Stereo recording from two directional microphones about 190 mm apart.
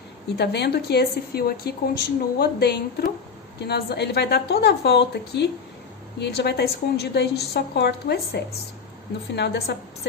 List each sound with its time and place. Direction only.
0.3 s a woman's voice: 60° left (ahead or behind)